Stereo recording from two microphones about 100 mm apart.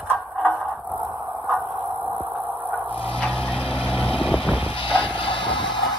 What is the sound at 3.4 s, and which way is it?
Vehicle, 65° left (ahead or behind).